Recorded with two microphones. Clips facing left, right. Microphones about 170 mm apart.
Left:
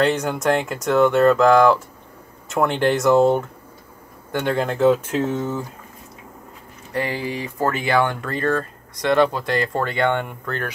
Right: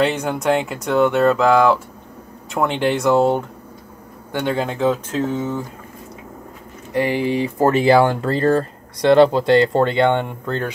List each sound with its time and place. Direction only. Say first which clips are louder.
0.0 s speech: right 1 dB; centre (ahead or behind)
4.4 s speech: left 1 dB; centre (ahead or behind)
6.9 s speech: right 6 dB; 15° right (ahead or behind)